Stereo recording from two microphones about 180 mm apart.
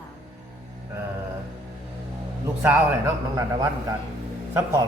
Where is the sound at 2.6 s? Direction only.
15° right (ahead or behind).